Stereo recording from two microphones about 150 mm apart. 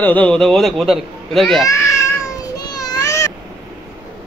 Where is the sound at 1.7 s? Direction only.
20° left (ahead or behind).